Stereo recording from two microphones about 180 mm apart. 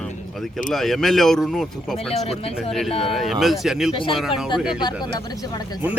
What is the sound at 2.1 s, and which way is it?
Speech, 35° left (ahead or behind).